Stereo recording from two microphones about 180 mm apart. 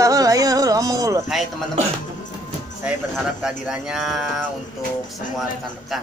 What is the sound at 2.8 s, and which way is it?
Speech, 5° right (ahead or behind).